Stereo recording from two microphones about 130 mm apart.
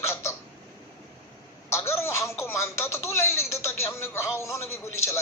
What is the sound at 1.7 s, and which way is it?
Speech, 20° left (ahead or behind).